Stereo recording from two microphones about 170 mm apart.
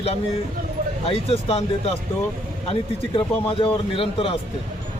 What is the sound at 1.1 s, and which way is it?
Speech, 35° left (ahead or behind).